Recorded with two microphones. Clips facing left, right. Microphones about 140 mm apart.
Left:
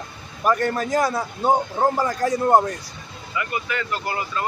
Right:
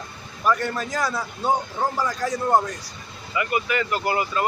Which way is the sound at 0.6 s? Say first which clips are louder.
Left 5 dB; 50° left (ahead or behind).